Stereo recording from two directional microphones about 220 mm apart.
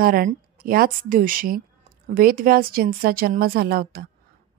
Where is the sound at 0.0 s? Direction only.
40° right (ahead or behind).